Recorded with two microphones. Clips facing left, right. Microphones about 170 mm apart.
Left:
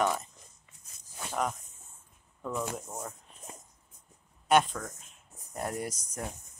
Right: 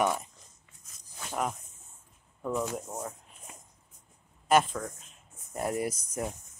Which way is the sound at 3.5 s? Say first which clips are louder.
Left 4 dB; 35° left (ahead or behind).